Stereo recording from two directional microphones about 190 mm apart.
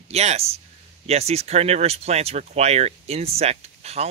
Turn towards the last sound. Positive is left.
turn(degrees=-35)  # may be behind; listen again after turning